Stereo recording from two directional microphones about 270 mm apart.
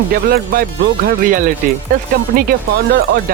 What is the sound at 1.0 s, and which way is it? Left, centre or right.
Speech, right.